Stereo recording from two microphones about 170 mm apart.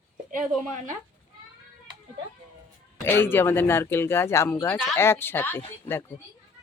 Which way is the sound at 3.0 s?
15° left (ahead or behind).